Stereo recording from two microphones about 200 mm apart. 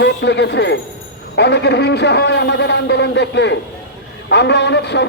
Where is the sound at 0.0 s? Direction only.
60° left (ahead or behind).